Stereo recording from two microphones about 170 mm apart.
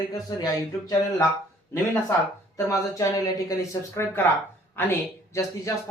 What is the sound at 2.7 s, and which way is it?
Speech, 20° left (ahead or behind).